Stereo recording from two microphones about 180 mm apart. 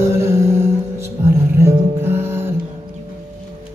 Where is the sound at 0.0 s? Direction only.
15° right (ahead or behind).